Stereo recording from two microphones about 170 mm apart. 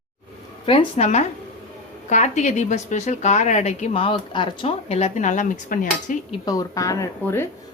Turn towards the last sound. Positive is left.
turn(degrees=15)  # may be behind; listen again after turning